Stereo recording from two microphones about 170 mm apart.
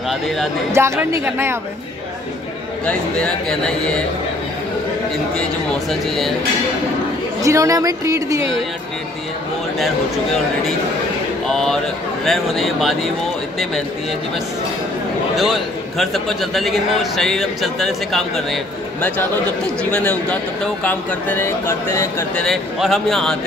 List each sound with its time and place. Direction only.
0.7 s speech: 15° right (ahead or behind)
3.4 s a man's voice: 5° left (ahead or behind)
5.3 s a man's voice: 5° left (ahead or behind)
7.4 s speech: 20° right (ahead or behind)
11.4 s a man's voice: 5° left (ahead or behind)
15.3 s a man's voice: centre (ahead or behind); by 22.4 s 15° left (ahead or behind)
22.4 s a man's voice: centre (ahead or behind)